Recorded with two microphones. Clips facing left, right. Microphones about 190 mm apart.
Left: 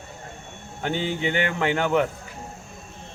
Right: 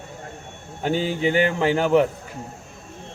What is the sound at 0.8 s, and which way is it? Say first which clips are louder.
Speech: right 4 dB; 35° right (ahead or behind).